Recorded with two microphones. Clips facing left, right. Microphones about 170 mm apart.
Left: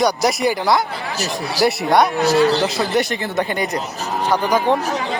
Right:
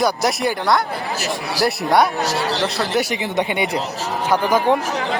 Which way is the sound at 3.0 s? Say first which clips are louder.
Even; 10° right (ahead or behind).